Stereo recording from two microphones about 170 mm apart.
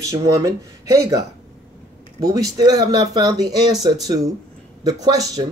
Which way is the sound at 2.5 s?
20° right (ahead or behind).